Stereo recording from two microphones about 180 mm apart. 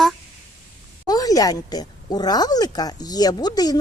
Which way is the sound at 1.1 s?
20° left (ahead or behind).